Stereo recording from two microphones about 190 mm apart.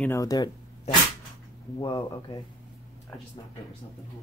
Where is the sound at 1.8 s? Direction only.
25° left (ahead or behind).